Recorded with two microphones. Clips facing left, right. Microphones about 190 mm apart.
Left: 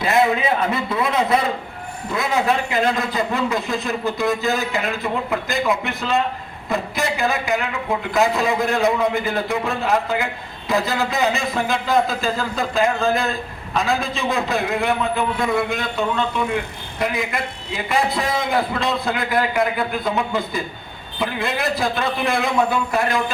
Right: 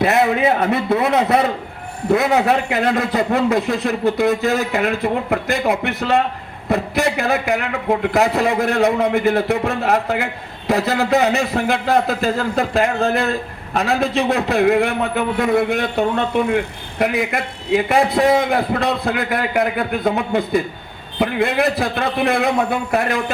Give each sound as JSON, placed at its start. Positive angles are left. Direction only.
{"t": 0.0, "sound": "a man's voice", "side_deg": -65}